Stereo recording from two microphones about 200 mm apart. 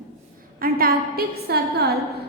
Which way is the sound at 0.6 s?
50° right (ahead or behind).